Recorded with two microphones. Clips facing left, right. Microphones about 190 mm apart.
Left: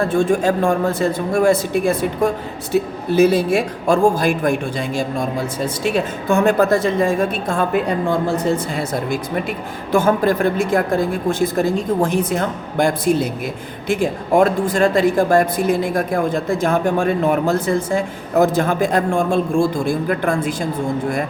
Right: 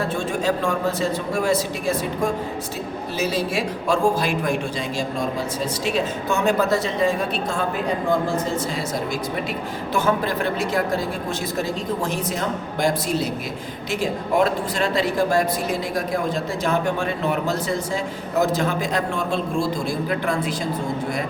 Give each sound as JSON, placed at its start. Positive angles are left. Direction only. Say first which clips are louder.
{"t": 0.0, "sound": "speech", "louder": "left 7 dB", "side_deg": 50}
{"t": 9.9, "sound": "speech", "louder": "left 7 dB", "side_deg": 50}